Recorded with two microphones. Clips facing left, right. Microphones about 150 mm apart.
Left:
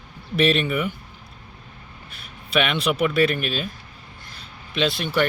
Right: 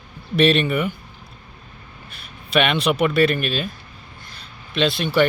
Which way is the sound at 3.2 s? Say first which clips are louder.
Right 2 dB; 5° left (ahead or behind).